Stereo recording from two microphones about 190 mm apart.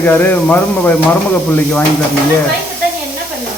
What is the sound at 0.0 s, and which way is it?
Speech, 10° left (ahead or behind).